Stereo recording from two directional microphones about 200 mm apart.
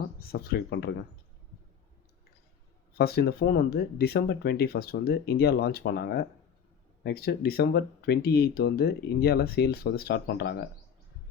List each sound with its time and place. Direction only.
0.3 s speech: 50° left (ahead or behind)
3.0 s speech: 50° left (ahead or behind)